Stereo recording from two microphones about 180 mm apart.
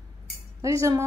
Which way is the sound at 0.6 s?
20° right (ahead or behind).